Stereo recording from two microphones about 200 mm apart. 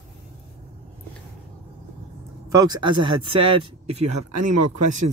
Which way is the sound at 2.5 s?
20° right (ahead or behind).